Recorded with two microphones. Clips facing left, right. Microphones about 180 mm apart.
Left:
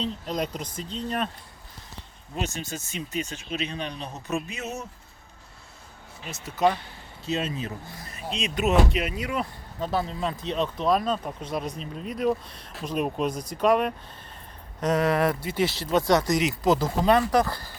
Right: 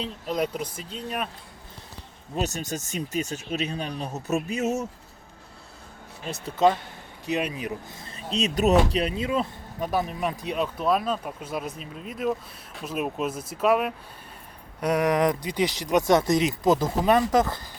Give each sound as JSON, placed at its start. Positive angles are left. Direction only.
{"t": 0.0, "sound": "speech", "side_deg": -5}
{"t": 2.3, "sound": "speech", "side_deg": -40}
{"t": 6.4, "sound": "speech", "side_deg": -25}
{"t": 8.0, "sound": "speech", "side_deg": -35}